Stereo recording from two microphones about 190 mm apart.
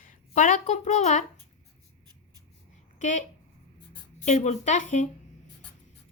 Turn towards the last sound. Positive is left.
turn(degrees=40)  # may be behind; listen again after turning